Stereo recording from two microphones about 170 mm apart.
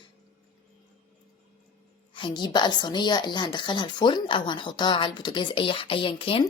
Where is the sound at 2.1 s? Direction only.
25° left (ahead or behind).